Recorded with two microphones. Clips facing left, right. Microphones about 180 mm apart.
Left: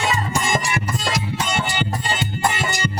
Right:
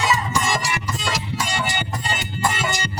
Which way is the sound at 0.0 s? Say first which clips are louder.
Even; 55° left (ahead or behind).